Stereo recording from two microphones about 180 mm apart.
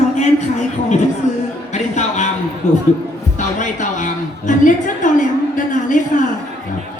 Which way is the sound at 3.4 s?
45° left (ahead or behind).